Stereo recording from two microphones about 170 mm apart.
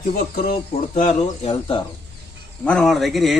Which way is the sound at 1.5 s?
30° left (ahead or behind).